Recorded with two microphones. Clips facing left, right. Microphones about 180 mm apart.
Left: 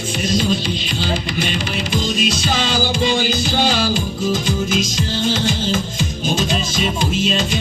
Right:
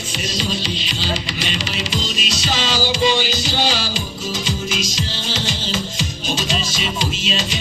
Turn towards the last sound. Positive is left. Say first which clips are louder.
# left 5 dB
turn(degrees=55)  # may be behind; listen again after turning